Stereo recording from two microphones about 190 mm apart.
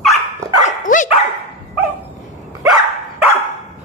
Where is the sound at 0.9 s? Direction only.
40° left (ahead or behind).